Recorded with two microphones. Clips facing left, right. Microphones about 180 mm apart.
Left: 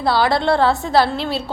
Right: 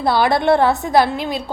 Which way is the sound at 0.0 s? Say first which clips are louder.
Right 1 dB; 20° right (ahead or behind).